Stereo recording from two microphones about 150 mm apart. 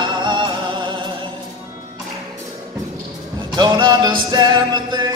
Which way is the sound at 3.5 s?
30° right (ahead or behind).